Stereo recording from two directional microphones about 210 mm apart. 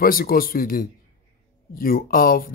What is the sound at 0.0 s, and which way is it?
Speech, 45° left (ahead or behind).